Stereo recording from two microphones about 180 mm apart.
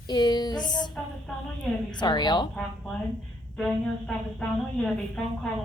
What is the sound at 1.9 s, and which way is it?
Speech, 25° left (ahead or behind).